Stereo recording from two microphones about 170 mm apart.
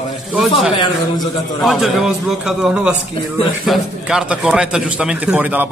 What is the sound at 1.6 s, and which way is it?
A man's voice, centre (ahead or behind).